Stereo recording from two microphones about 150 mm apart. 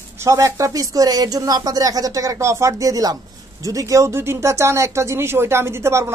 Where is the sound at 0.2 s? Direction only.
20° right (ahead or behind).